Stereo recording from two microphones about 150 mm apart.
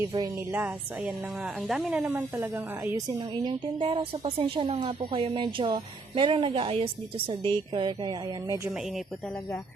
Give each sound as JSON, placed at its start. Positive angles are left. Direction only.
{"t": 0.0, "sound": "a woman's voice", "side_deg": -20}
{"t": 0.5, "sound": "a woman's voice", "side_deg": -10}
{"t": 3.2, "sound": "a woman's voice", "side_deg": -30}